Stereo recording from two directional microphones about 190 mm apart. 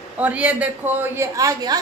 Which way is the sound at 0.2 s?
5° right (ahead or behind).